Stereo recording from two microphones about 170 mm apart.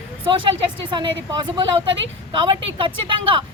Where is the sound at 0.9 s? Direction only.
25° right (ahead or behind).